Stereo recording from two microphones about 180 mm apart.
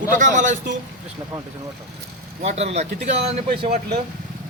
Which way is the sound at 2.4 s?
35° right (ahead or behind).